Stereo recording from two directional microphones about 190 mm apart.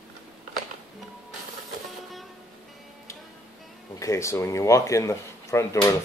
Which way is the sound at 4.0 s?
15° left (ahead or behind).